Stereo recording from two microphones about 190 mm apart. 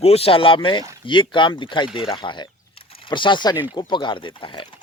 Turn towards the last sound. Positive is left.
turn(degrees=25)  # may be behind; listen again after turning